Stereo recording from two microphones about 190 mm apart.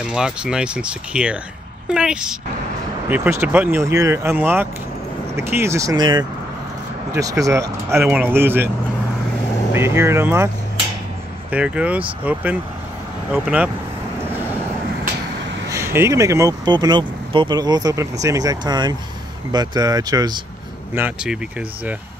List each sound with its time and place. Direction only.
0.1 s speech: 5° right (ahead or behind)
9.8 s speech: 15° right (ahead or behind)
11.5 s speech: 5° right (ahead or behind)
15.7 s speech: 15° right (ahead or behind)
20.9 s speech: 5° right (ahead or behind)